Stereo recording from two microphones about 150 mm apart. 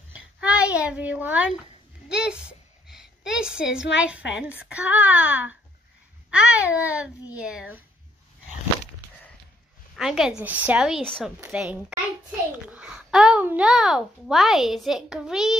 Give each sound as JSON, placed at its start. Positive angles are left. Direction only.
{"t": 0.4, "sound": "a child's voice", "side_deg": -5}
{"t": 9.9, "sound": "a child's voice", "side_deg": -5}
{"t": 11.1, "sound": "a child's voice", "side_deg": 5}
{"t": 11.4, "sound": "a child's voice", "side_deg": -10}